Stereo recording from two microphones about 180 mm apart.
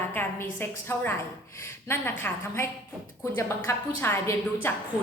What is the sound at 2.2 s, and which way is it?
A woman's voice, 15° left (ahead or behind).